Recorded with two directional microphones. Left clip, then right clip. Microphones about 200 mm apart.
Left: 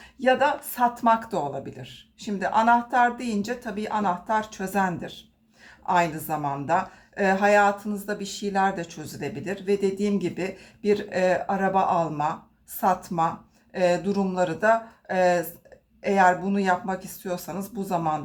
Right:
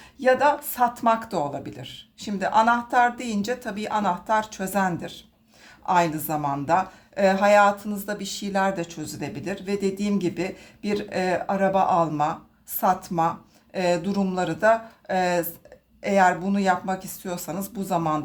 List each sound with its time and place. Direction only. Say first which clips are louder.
0.2 s a woman's voice: right 2 dB; 25° right (ahead or behind)